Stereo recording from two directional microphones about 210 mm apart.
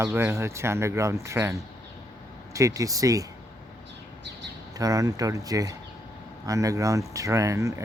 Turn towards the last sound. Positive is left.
turn(degrees=-15)  # may be behind; listen again after turning